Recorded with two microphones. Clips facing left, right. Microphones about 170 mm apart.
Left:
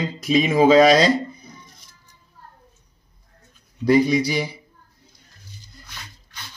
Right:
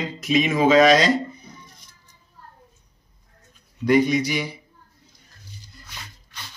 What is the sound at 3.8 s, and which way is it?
Speech, 35° left (ahead or behind).